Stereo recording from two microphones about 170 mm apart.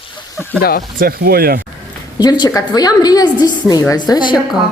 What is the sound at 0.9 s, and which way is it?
Speech, 65° right (ahead or behind).